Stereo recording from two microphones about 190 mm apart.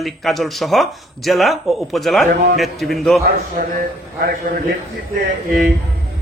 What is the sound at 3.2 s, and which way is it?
A man's voice, 55° right (ahead or behind).